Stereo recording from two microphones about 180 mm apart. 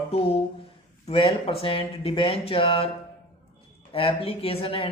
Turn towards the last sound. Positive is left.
turn(degrees=30)  # may be behind; listen again after turning